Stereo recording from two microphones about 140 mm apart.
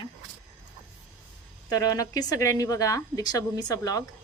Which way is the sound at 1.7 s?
25° left (ahead or behind).